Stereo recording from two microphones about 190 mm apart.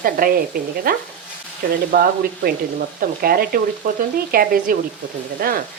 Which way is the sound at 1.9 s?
50° right (ahead or behind).